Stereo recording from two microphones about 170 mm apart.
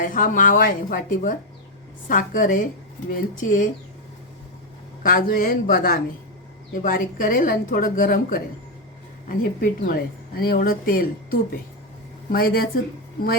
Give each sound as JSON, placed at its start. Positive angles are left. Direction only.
{"t": 0.0, "sound": "a woman's voice", "side_deg": 55}
{"t": 5.0, "sound": "speech", "side_deg": 55}